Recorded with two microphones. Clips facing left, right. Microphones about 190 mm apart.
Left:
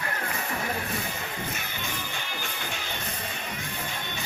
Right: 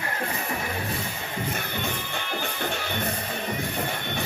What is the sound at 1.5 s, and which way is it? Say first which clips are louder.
Music: right 5 dB; 55° right (ahead or behind).